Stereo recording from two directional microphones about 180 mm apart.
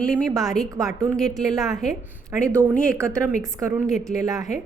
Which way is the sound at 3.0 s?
15° right (ahead or behind).